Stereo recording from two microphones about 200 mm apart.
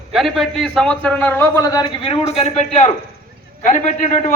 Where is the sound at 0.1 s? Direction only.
Centre (ahead or behind).